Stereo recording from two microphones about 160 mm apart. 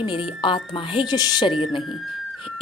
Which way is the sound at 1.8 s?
Centre (ahead or behind).